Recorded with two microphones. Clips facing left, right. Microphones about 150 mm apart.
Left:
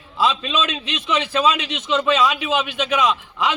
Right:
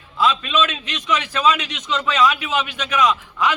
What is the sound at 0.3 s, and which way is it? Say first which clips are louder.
A man's voice: right 3 dB; 25° left (ahead or behind).